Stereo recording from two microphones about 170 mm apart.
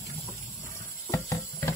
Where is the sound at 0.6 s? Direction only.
15° left (ahead or behind).